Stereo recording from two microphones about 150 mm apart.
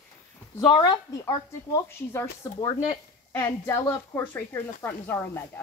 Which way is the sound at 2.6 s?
30° left (ahead or behind).